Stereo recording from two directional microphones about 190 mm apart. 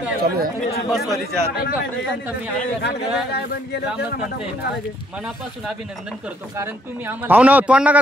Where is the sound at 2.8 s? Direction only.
60° left (ahead or behind).